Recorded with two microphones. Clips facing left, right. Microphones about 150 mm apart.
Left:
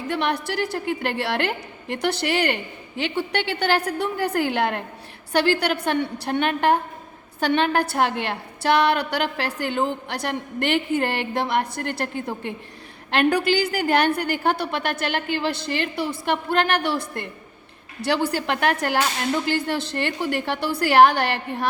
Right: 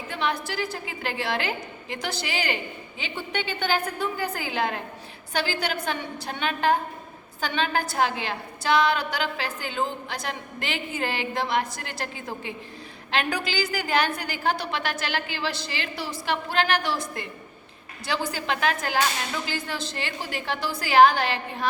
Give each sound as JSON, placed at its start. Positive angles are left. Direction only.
{"t": 0.1, "sound": "a woman's voice", "side_deg": 65}